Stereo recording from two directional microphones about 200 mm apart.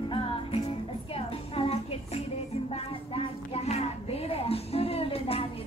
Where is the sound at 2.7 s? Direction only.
30° left (ahead or behind).